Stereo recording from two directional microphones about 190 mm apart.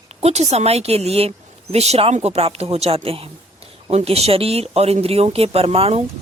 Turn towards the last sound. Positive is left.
turn(degrees=-30)  # may be behind; listen again after turning